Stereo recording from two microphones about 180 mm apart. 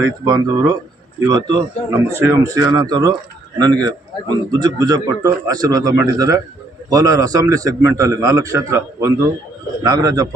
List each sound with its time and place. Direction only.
0.0 s a man's voice: 20° right (ahead or behind)